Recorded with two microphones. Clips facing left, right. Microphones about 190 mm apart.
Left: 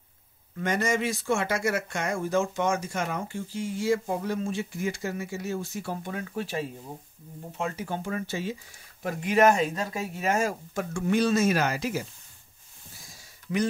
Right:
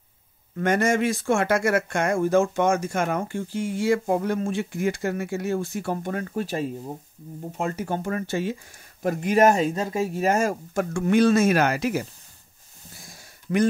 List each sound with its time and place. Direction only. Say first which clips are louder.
0.6 s speech: right 5 dB; 50° right (ahead or behind)
9.0 s speech: right 3 dB; 40° right (ahead or behind); by 12.1 s 60° right (ahead or behind)
13.1 s a sound: right 5 dB; 55° right (ahead or behind)